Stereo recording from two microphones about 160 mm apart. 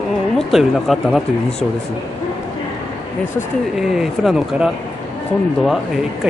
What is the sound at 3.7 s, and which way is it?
Speech, centre (ahead or behind).